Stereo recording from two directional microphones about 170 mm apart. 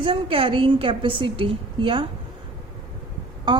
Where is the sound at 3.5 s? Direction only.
25° right (ahead or behind).